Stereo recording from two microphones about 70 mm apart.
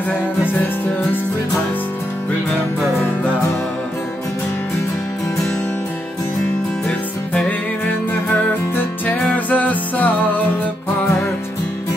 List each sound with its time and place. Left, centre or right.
8.1 s music: left